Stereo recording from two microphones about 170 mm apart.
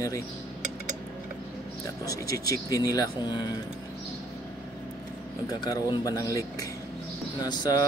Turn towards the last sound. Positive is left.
turn(degrees=25)  # may be behind; listen again after turning